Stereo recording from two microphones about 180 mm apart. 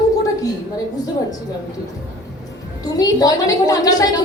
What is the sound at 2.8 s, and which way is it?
A woman's voice, 20° left (ahead or behind).